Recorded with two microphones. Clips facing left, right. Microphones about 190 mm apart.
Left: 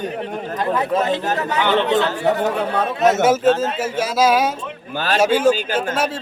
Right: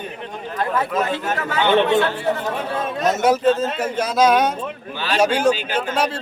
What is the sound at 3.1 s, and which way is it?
A man's voice, 5° left (ahead or behind).